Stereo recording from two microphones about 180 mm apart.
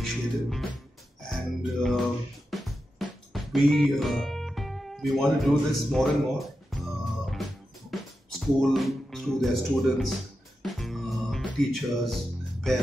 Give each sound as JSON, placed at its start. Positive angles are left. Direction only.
{"t": 0.0, "sound": "music", "side_deg": 0}
{"t": 7.9, "sound": "speech", "side_deg": 0}
{"t": 10.6, "sound": "music", "side_deg": 0}